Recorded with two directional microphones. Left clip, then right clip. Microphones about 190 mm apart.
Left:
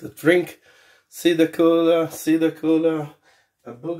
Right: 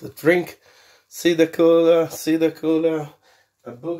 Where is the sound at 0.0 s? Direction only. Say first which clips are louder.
Even; 20° right (ahead or behind).